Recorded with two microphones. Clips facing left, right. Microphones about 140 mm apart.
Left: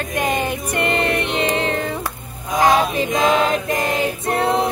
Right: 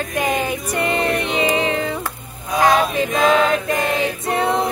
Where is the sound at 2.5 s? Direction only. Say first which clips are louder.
Even; 20° left (ahead or behind).